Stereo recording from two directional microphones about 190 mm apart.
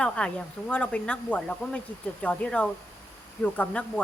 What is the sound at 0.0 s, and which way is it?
Speech, 5° left (ahead or behind).